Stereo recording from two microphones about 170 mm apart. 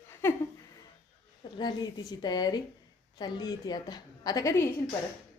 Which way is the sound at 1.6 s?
25° left (ahead or behind).